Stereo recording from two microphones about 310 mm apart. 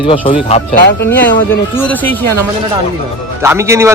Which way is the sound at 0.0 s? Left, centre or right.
Centre.